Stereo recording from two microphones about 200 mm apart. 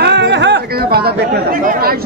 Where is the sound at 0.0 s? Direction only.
60° right (ahead or behind).